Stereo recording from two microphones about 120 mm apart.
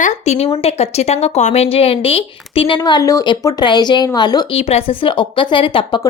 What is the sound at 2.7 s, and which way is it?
A woman's voice, 35° left (ahead or behind).